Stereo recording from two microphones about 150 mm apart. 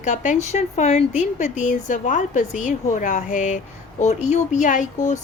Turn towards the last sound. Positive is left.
turn(degrees=55)  # may be behind; listen again after turning